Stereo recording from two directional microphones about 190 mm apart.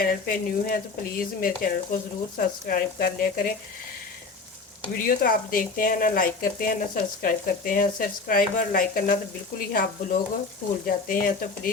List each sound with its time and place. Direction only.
0.0 s speech: 45° left (ahead or behind)
5.0 s speech: 50° left (ahead or behind)